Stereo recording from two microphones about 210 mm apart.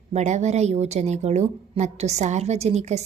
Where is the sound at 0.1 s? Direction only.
35° right (ahead or behind).